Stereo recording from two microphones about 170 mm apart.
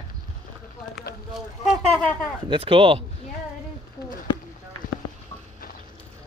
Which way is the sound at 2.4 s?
30° right (ahead or behind).